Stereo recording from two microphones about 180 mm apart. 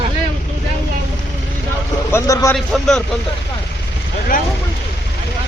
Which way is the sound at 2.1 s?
15° left (ahead or behind).